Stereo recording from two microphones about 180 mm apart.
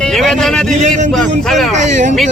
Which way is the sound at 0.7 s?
45° right (ahead or behind).